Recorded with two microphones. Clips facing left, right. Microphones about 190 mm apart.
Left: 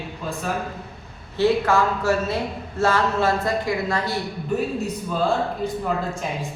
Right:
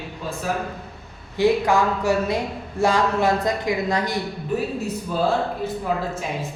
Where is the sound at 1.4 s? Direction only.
15° right (ahead or behind).